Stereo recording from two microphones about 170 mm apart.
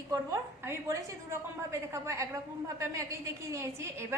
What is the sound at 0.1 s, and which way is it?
A woman's voice, 15° right (ahead or behind).